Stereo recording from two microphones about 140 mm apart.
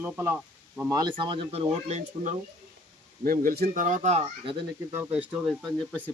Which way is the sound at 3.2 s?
90° right.